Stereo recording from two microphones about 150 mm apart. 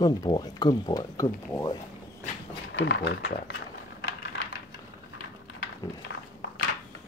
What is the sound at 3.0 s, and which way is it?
Speech, 90° left.